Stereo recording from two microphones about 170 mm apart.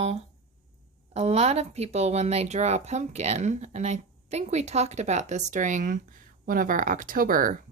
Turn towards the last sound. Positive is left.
turn(degrees=-55)  # may be behind; listen again after turning